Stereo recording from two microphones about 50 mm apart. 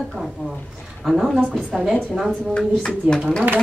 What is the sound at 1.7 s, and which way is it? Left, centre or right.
Speech, centre.